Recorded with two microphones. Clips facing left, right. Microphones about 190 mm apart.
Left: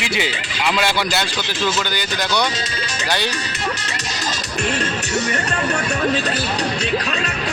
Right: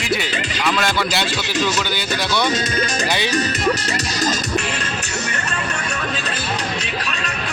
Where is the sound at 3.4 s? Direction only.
40° right (ahead or behind).